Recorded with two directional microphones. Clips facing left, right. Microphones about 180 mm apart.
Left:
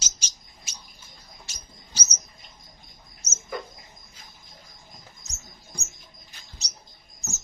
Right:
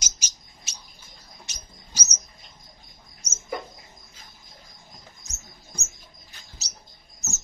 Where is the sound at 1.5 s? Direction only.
20° right (ahead or behind).